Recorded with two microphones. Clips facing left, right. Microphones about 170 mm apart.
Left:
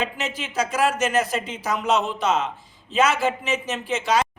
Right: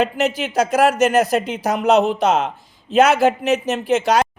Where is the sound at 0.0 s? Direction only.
70° right (ahead or behind).